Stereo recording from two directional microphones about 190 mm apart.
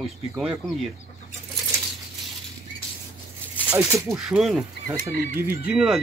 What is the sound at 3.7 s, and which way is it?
Speech, 15° right (ahead or behind).